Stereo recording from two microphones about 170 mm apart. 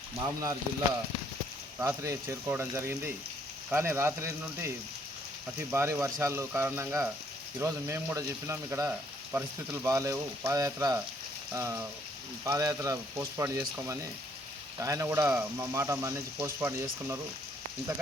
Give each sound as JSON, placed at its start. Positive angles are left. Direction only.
{"t": 0.2, "sound": "speech", "side_deg": -20}
{"t": 1.8, "sound": "speech", "side_deg": -15}